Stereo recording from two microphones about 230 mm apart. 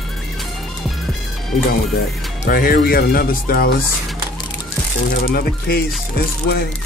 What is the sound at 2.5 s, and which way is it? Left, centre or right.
Speech, left.